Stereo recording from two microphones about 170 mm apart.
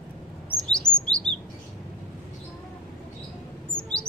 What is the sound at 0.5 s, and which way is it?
Chirp, 5° left (ahead or behind).